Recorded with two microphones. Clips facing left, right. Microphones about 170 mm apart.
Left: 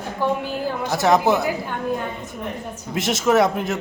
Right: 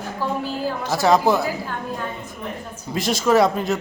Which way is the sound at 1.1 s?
20° left (ahead or behind).